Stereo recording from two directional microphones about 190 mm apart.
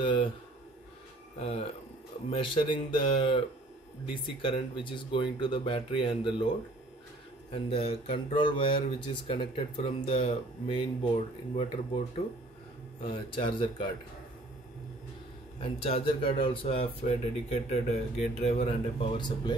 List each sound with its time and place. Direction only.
0.0 s speech: 25° left (ahead or behind)
1.4 s speech: 30° left (ahead or behind)
7.5 s speech: 30° left (ahead or behind)
13.0 s speech: 25° left (ahead or behind)
15.6 s speech: 30° left (ahead or behind)